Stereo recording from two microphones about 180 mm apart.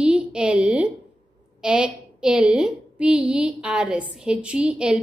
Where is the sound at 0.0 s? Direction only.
5° right (ahead or behind).